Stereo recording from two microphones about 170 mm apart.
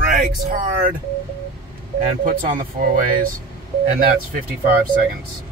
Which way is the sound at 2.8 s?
60° right (ahead or behind).